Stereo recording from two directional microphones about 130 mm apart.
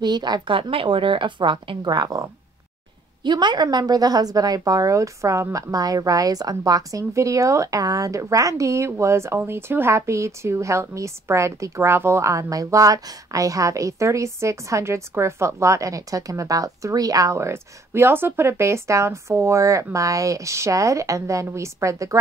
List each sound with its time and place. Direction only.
0.0 s a woman's voice: 35° right (ahead or behind)